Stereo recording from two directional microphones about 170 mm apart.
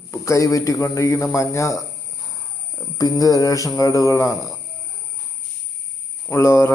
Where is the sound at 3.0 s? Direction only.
20° left (ahead or behind).